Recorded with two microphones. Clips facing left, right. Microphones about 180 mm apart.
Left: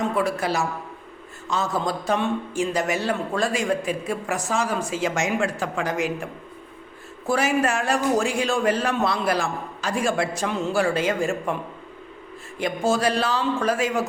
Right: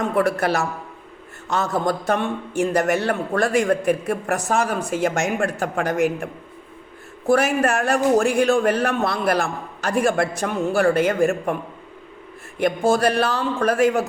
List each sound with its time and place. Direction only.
0.2 s a man's voice: 65° right (ahead or behind)
7.3 s a man's voice: 60° right (ahead or behind)
12.5 s a man's voice: 60° right (ahead or behind)